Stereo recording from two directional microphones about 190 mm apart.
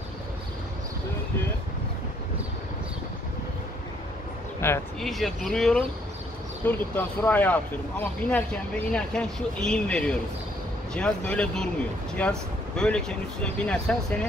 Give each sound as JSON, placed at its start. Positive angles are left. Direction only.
{"t": 4.6, "sound": "speech", "side_deg": 15}
{"t": 5.0, "sound": "speech", "side_deg": 0}